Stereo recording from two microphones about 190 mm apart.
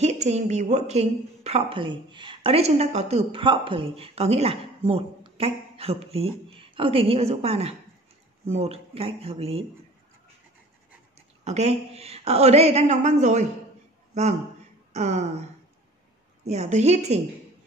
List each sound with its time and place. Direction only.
0.0 s a woman's voice: 35° right (ahead or behind)
11.4 s a woman's voice: 35° right (ahead or behind)
14.9 s speech: 35° right (ahead or behind)
16.4 s a woman's voice: 35° right (ahead or behind)